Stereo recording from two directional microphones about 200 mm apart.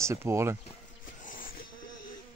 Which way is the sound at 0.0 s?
15° right (ahead or behind).